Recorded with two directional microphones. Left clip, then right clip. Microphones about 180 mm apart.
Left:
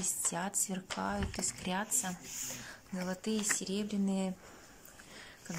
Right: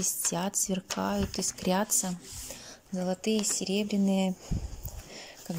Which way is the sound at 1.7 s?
25° right (ahead or behind).